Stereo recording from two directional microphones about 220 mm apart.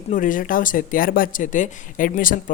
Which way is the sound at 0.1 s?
35° left (ahead or behind).